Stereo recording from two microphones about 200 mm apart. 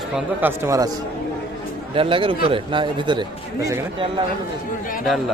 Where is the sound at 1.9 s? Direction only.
25° right (ahead or behind).